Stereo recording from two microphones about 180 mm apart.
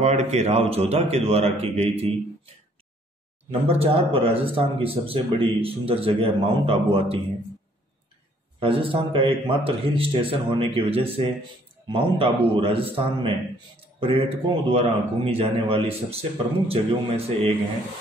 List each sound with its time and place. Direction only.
0.0 s speech: 40° right (ahead or behind)
3.6 s speech: 35° right (ahead or behind)
8.5 s a man's voice: 30° right (ahead or behind)